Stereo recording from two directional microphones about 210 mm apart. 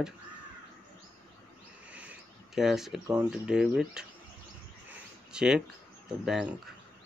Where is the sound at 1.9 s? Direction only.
5° right (ahead or behind).